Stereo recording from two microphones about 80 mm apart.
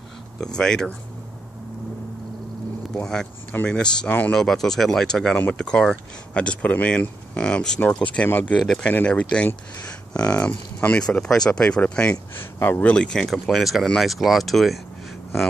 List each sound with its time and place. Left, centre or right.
0.4 s speech: centre
2.9 s speech: centre
8.3 s speech: left
8.5 s speech: centre
12.5 s speech: left
12.8 s speech: centre